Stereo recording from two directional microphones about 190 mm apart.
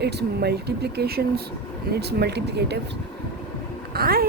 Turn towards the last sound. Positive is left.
turn(degrees=-55)  # may be behind; listen again after turning